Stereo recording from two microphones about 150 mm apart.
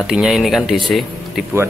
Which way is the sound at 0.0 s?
Centre (ahead or behind).